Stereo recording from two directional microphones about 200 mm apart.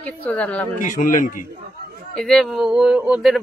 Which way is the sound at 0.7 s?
40° left (ahead or behind).